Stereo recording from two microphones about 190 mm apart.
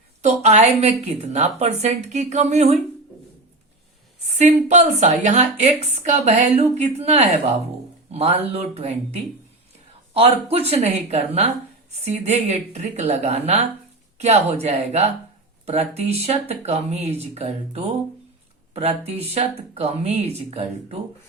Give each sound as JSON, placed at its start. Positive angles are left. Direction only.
{"t": 0.2, "sound": "a woman's voice", "side_deg": -40}
{"t": 4.4, "sound": "a woman's voice", "side_deg": -35}